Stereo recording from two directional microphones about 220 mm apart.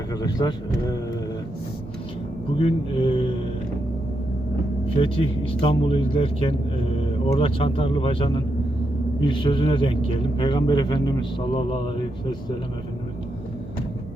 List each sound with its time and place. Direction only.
0.1 s speech: 15° left (ahead or behind)
2.6 s mantra: 25° left (ahead or behind)
4.9 s a man's voice: 25° left (ahead or behind)